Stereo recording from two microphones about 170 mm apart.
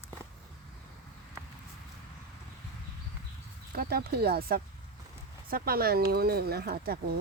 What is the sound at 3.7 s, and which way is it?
Speech, 65° right (ahead or behind).